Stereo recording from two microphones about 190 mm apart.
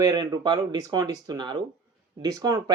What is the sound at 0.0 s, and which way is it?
Speech, 20° right (ahead or behind).